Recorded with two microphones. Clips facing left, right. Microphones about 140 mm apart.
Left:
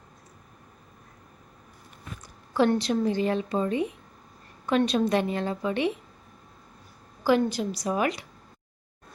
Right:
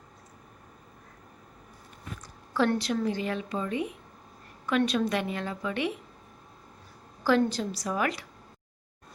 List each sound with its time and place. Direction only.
2.5 s a woman's voice: 20° left (ahead or behind)
7.3 s a woman's voice: 15° left (ahead or behind)